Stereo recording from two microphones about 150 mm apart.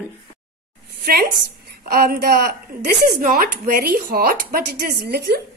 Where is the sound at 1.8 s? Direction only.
85° right.